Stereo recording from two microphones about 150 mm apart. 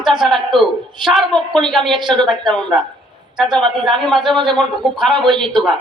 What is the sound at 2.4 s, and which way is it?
Speech, 5° left (ahead or behind).